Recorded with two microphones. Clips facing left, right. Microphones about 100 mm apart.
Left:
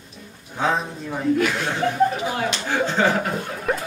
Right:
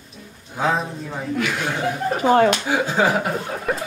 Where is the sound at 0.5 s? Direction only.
Centre (ahead or behind).